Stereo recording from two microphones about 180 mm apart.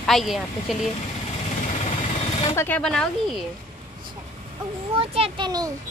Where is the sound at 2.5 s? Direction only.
15° left (ahead or behind).